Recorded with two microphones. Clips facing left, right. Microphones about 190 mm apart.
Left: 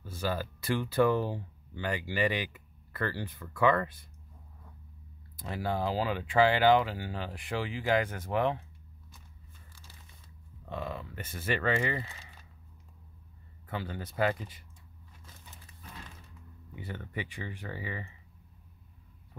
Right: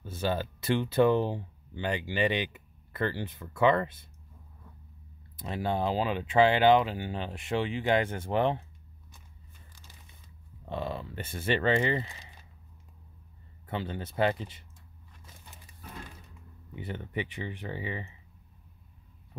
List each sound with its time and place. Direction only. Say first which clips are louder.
0.0 s speech: right 3 dB; 25° right (ahead or behind)
5.4 s speech: right 2 dB; 25° right (ahead or behind)
10.6 s speech: right 3 dB; 30° right (ahead or behind)
13.7 s speech: right 3 dB; 25° right (ahead or behind)
16.7 s speech: right 4 dB; 20° right (ahead or behind)